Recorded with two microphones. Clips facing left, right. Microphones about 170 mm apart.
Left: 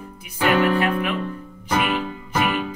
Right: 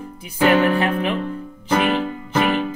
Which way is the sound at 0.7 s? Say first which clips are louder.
Right 1 dB; 30° right (ahead or behind).